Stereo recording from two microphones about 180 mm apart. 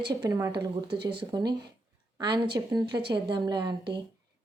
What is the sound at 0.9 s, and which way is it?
Speech, 65° right (ahead or behind).